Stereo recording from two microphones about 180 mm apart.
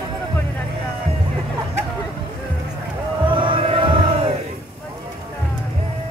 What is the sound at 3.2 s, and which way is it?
Crowd, 25° right (ahead or behind).